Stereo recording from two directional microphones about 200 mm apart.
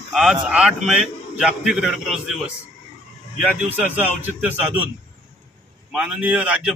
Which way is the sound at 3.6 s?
10° right (ahead or behind).